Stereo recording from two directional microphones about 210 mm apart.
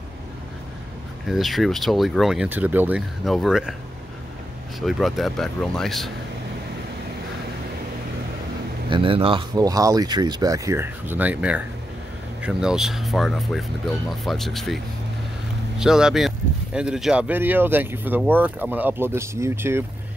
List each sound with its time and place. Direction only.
1.2 s speech: centre (ahead or behind)
4.7 s speech: centre (ahead or behind)
8.9 s speech: 25° right (ahead or behind); by 14.8 s centre (ahead or behind)
15.8 s speech: centre (ahead or behind)